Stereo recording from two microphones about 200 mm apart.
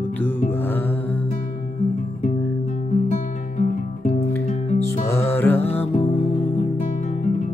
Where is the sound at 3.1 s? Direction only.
35° left (ahead or behind).